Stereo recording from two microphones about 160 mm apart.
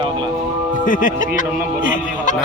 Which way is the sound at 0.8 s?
55° left (ahead or behind).